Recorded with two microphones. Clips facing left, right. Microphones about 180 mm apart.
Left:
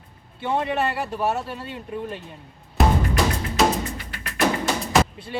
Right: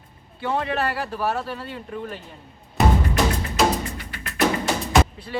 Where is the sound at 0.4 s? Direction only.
20° left (ahead or behind).